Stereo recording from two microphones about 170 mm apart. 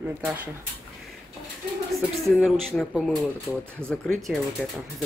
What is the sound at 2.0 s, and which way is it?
Speech, centre (ahead or behind).